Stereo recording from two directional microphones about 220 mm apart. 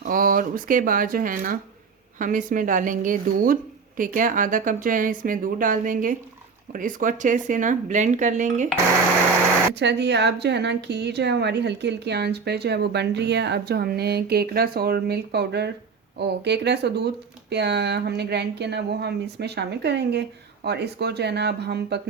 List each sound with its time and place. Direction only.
0.0 s speech: 40° right (ahead or behind)
9.7 s a woman's voice: 50° right (ahead or behind)